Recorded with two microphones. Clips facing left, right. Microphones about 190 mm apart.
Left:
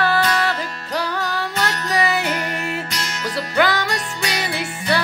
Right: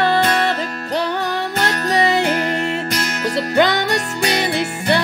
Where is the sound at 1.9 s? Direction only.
25° right (ahead or behind).